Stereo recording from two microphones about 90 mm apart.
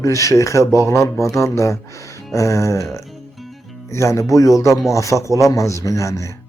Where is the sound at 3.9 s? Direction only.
35° left (ahead or behind).